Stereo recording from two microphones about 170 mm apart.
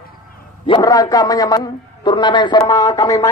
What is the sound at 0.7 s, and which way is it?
A man's voice, 20° left (ahead or behind).